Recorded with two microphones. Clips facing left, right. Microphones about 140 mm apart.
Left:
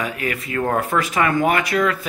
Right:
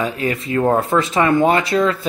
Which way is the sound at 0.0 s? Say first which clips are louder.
Right 4 dB; 25° right (ahead or behind).